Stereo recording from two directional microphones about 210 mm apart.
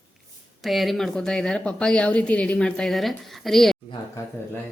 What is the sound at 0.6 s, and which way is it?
Speech, centre (ahead or behind).